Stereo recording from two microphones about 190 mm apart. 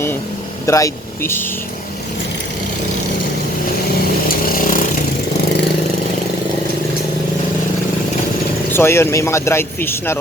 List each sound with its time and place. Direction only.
0.6 s speech: 15° left (ahead or behind)
4.3 s chainsaw: 50° left (ahead or behind)
8.7 s speech: 15° left (ahead or behind)